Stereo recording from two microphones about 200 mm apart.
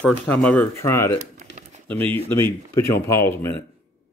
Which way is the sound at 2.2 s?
15° left (ahead or behind).